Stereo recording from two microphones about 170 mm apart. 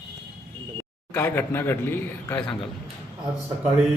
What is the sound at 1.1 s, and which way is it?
A man's voice, 15° left (ahead or behind).